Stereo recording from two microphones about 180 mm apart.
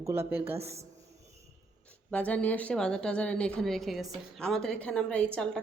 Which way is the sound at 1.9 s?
5° left (ahead or behind).